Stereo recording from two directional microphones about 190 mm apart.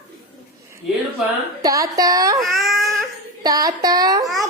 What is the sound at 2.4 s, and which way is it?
Baby cry, centre (ahead or behind).